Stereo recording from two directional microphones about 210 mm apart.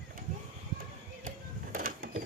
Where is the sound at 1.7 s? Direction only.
40° right (ahead or behind).